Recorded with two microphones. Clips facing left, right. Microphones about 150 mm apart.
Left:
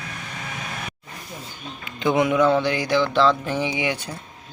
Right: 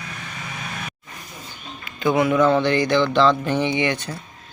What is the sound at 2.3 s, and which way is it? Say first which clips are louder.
Speech: right 2 dB; 5° left (ahead or behind).